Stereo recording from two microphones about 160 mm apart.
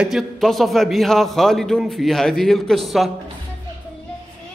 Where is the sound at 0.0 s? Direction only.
Centre (ahead or behind).